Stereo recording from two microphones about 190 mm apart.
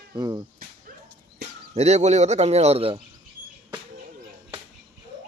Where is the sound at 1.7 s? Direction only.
35° right (ahead or behind).